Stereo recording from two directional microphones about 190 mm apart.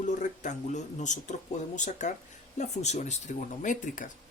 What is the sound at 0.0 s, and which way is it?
Speech, 40° left (ahead or behind).